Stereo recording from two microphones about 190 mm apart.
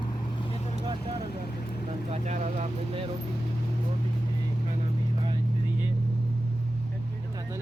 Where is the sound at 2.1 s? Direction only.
35° right (ahead or behind).